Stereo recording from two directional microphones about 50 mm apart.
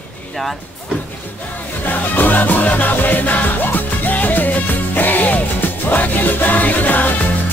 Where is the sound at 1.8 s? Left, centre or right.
Left.